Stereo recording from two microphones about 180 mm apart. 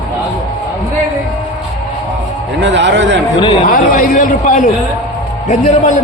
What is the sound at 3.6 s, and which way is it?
Speech, 50° left (ahead or behind).